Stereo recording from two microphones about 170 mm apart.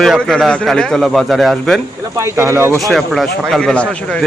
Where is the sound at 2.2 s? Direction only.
15° right (ahead or behind).